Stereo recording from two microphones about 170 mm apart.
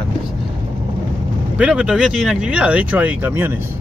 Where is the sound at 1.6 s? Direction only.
5° right (ahead or behind).